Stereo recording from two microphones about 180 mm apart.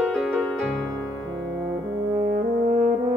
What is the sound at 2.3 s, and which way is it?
French horn, 45° right (ahead or behind).